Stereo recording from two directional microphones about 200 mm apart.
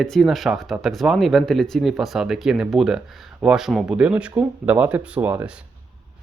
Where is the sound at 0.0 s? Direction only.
Centre (ahead or behind).